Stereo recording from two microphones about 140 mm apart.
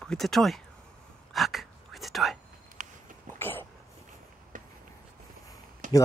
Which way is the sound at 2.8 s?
70° right (ahead or behind).